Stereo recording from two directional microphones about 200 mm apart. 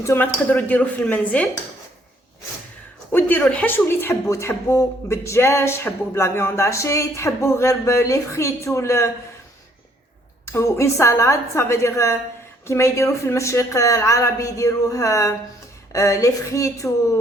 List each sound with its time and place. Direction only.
0.0 s speech: 15° left (ahead or behind)
3.1 s speech: 10° left (ahead or behind)
10.4 s speech: 15° left (ahead or behind)